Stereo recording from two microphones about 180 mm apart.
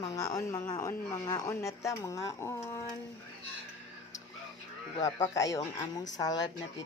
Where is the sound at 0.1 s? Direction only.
20° left (ahead or behind).